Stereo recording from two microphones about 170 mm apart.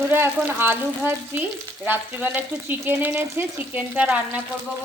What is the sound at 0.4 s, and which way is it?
Frying, 10° right (ahead or behind).